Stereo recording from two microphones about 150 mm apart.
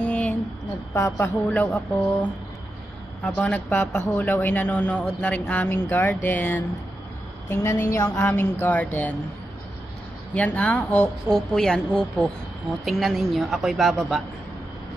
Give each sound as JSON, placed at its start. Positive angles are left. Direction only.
{"t": 0.0, "sound": "a sound", "side_deg": 10}
{"t": 0.9, "sound": "a woman's voice", "side_deg": 20}
{"t": 1.5, "sound": "a woman's voice", "side_deg": 10}
{"t": 3.3, "sound": "a woman's voice", "side_deg": 10}
{"t": 10.3, "sound": "a woman's voice", "side_deg": 10}